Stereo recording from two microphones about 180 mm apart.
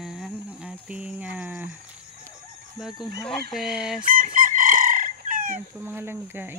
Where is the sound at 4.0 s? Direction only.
50° right (ahead or behind).